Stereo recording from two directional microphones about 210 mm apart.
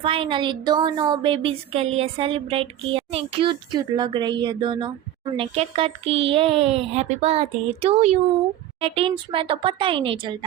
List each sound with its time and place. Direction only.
0.0 s a woman's voice: 25° right (ahead or behind)